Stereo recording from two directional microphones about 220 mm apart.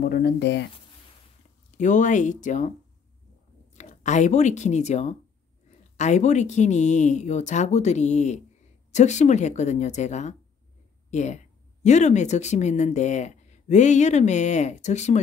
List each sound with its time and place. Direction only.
0.0 s speech: 45° left (ahead or behind)
1.8 s speech: 35° left (ahead or behind)
3.7 s speech: 35° left (ahead or behind)